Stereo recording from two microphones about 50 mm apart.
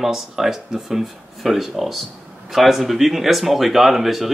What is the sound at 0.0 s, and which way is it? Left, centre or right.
Speech, centre.